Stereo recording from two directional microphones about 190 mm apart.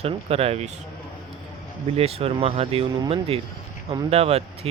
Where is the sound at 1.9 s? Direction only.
30° right (ahead or behind).